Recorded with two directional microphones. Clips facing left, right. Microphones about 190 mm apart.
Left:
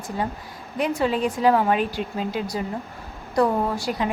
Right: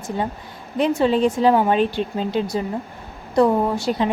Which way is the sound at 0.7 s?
25° right (ahead or behind).